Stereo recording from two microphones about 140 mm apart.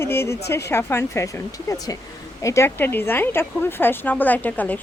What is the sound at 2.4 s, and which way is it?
Speech, 20° left (ahead or behind).